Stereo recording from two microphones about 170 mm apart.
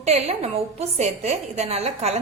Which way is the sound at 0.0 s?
40° right (ahead or behind).